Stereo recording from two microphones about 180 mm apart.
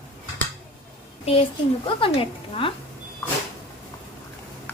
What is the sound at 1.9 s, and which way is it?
Speech, 30° left (ahead or behind).